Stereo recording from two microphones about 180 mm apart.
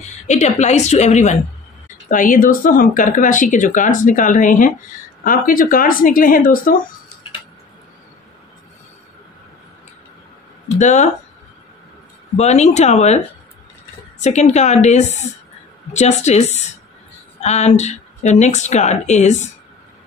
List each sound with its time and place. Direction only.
0.0 s a woman's voice: 40° left (ahead or behind)
10.8 s a woman's voice: 40° left (ahead or behind)
12.4 s a woman's voice: 40° left (ahead or behind)
14.2 s a woman's voice: 40° left (ahead or behind)